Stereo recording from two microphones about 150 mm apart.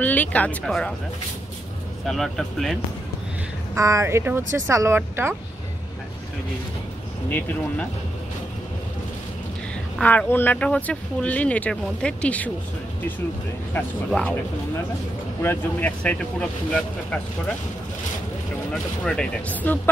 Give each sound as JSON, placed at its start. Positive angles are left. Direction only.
{"t": 0.0, "sound": "speech", "side_deg": 10}
{"t": 2.0, "sound": "speech", "side_deg": 0}
{"t": 3.7, "sound": "speech", "side_deg": -20}
{"t": 9.9, "sound": "speech", "side_deg": 10}
{"t": 13.7, "sound": "speech", "side_deg": 10}
{"t": 15.4, "sound": "speech", "side_deg": 10}
{"t": 18.7, "sound": "speech", "side_deg": 5}